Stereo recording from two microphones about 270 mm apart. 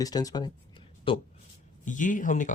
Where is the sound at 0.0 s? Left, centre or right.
Centre.